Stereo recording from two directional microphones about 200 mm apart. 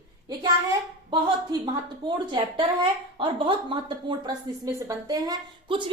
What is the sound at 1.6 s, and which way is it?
A woman's voice, 20° right (ahead or behind).